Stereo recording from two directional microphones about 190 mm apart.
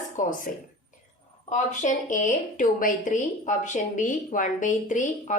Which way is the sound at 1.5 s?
40° left (ahead or behind).